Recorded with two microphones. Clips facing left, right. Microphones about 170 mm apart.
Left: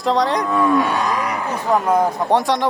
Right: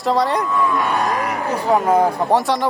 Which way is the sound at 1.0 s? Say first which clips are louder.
Even; 55° right (ahead or behind).